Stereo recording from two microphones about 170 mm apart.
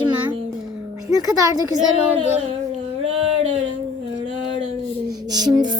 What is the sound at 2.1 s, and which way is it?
Speech, 40° right (ahead or behind).